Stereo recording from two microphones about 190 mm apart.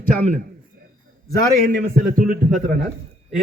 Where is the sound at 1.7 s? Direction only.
50° right (ahead or behind).